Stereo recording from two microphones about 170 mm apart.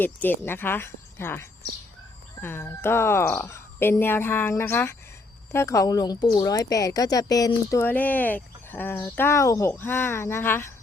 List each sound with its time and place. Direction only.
0.0 s a woman's voice: 10° left (ahead or behind)